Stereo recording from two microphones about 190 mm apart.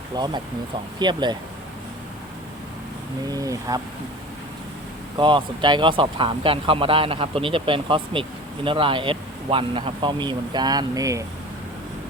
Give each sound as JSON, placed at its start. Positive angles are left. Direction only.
{"t": 0.1, "sound": "speech", "side_deg": -20}
{"t": 3.2, "sound": "speech", "side_deg": -20}
{"t": 5.1, "sound": "speech", "side_deg": -25}